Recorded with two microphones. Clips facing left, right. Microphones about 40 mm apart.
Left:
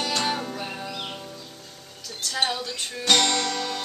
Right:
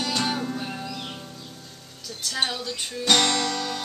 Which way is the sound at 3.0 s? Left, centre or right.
Centre.